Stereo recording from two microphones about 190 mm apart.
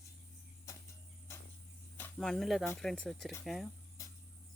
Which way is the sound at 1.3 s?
15° left (ahead or behind).